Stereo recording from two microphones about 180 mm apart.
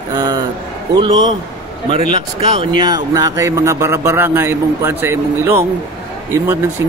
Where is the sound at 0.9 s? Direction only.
25° right (ahead or behind).